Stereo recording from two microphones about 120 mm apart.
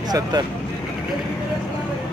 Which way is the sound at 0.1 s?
35° right (ahead or behind).